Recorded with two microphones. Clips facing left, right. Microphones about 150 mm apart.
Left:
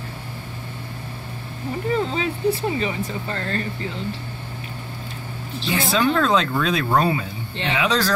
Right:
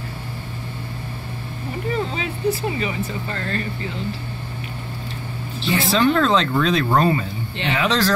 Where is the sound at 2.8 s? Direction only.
35° left (ahead or behind).